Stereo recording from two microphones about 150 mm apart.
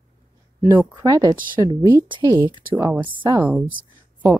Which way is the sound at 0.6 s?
15° right (ahead or behind).